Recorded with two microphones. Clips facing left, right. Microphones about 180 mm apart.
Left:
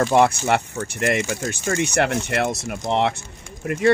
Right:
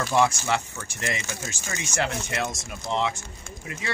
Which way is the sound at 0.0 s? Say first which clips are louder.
Left 6 dB; 60° left (ahead or behind).